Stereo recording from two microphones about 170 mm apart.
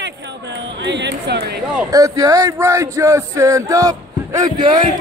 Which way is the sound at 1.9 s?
20° right (ahead or behind).